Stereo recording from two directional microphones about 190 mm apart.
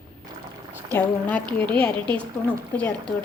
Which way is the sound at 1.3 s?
10° left (ahead or behind).